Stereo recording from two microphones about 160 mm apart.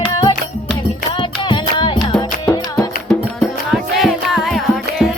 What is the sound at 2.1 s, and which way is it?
Music, 10° left (ahead or behind).